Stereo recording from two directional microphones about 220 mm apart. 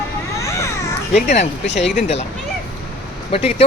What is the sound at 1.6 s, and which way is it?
Speech, 55° left (ahead or behind).